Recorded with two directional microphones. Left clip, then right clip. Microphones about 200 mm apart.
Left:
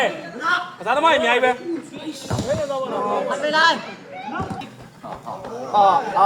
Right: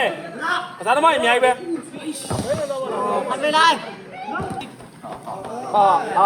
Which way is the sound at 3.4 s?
20° right (ahead or behind).